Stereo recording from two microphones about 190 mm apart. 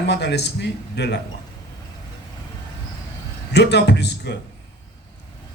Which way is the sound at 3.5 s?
60° left (ahead or behind).